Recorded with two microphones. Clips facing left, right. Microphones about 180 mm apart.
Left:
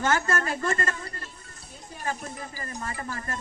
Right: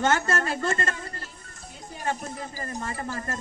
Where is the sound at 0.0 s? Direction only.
30° right (ahead or behind).